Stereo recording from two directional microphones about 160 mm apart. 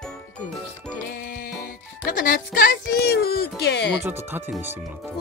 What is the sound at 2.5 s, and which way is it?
Speech, 70° left (ahead or behind).